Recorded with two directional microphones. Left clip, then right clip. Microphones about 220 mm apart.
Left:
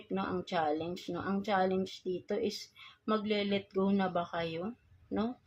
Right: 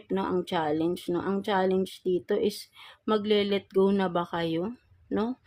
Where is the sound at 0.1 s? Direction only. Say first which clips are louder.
Right 7 dB; 45° right (ahead or behind).